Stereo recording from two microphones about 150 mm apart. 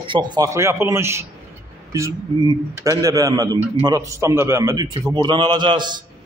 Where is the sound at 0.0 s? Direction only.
30° right (ahead or behind).